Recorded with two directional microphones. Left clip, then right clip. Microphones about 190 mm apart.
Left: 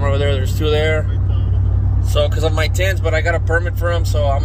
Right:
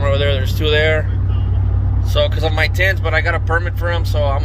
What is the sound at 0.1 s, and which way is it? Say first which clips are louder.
Vehicle: right 2 dB; 45° left (ahead or behind).